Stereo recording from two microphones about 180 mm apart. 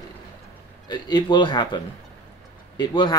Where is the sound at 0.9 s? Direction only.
25° left (ahead or behind).